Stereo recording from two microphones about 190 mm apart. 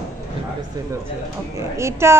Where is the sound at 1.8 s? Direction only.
15° right (ahead or behind).